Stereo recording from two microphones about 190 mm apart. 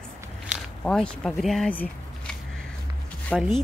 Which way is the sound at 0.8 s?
5° left (ahead or behind).